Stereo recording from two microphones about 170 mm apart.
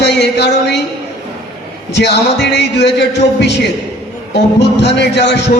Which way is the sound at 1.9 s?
90° left.